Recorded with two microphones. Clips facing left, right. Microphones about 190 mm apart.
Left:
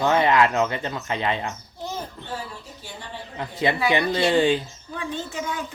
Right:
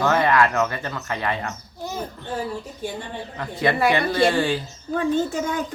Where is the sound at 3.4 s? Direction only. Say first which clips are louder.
Right 2 dB; 20° left (ahead or behind).